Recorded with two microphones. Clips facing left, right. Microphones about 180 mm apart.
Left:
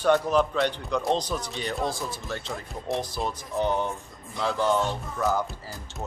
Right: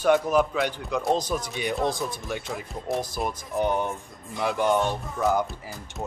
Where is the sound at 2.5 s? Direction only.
Centre (ahead or behind).